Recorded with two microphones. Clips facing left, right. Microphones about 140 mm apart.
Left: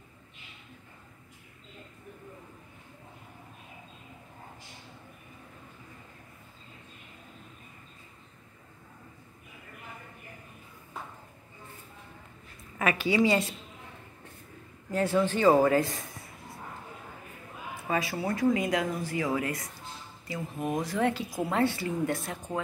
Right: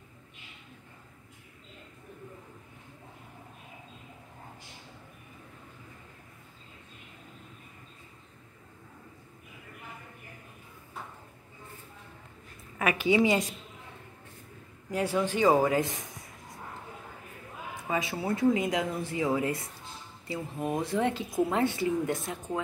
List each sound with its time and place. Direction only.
12.7 s a woman's voice: 15° right (ahead or behind)
14.9 s speech: 10° right (ahead or behind)
17.8 s speech: 20° right (ahead or behind)
20.8 s speech: 25° right (ahead or behind)